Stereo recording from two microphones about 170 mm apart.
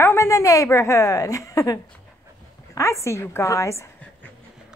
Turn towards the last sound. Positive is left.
turn(degrees=15)  # may be behind; listen again after turning